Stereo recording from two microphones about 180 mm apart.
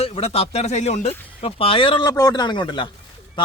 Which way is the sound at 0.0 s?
35° left (ahead or behind).